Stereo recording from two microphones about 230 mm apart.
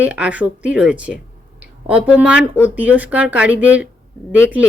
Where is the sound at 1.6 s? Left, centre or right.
Centre.